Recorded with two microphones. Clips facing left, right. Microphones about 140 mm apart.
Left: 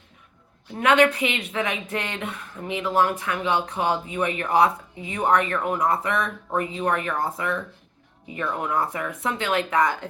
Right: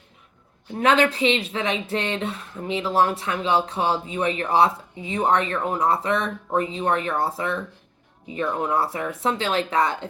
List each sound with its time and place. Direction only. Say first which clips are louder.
0.8 s speech: even; 30° right (ahead or behind)